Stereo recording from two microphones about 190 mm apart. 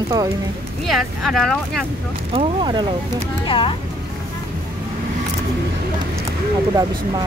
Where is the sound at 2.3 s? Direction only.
25° right (ahead or behind).